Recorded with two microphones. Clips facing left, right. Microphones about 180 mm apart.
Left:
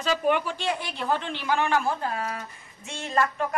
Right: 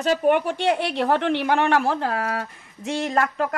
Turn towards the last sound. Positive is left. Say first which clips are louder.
# right 4 dB
turn(degrees=-90)